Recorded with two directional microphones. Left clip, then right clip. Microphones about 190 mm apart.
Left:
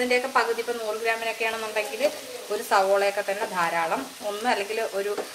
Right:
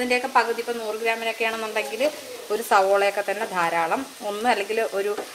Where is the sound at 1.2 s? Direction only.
45° right (ahead or behind).